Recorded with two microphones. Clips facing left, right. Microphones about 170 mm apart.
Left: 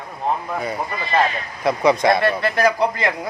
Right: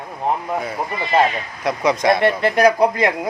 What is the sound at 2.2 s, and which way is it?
Speech, 20° right (ahead or behind).